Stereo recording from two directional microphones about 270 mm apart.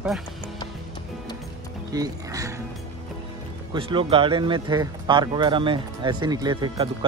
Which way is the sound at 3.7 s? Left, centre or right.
Centre.